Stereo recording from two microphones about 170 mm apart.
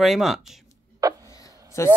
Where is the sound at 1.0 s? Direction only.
20° right (ahead or behind).